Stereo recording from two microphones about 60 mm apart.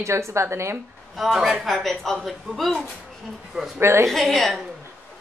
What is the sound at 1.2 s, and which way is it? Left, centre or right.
Speech, centre.